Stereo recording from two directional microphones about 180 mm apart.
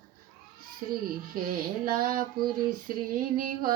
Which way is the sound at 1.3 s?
50° right (ahead or behind).